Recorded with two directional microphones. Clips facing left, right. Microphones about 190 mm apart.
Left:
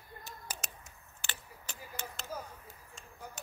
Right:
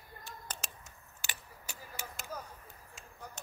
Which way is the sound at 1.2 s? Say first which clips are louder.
Left 1 dB; 10° right (ahead or behind).